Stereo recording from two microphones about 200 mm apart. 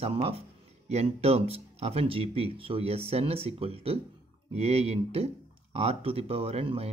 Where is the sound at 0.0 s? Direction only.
30° right (ahead or behind).